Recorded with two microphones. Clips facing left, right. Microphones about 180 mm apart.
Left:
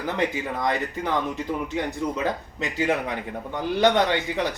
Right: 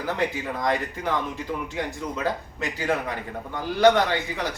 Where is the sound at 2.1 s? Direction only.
20° left (ahead or behind).